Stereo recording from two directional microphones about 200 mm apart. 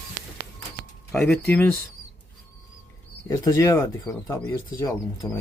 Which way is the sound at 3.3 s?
15° left (ahead or behind).